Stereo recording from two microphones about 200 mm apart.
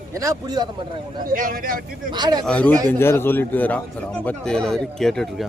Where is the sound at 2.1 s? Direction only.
20° right (ahead or behind).